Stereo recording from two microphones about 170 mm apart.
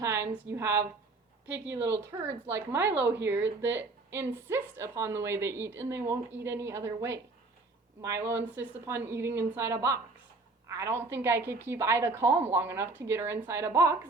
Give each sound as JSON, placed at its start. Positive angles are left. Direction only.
{"t": 0.0, "sound": "speech", "side_deg": -15}
{"t": 1.5, "sound": "a woman's voice", "side_deg": -90}
{"t": 2.2, "sound": "speech", "side_deg": -15}
{"t": 8.5, "sound": "speech", "side_deg": -15}